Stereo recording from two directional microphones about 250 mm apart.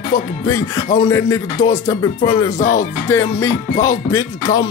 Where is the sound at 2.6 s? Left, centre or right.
Left.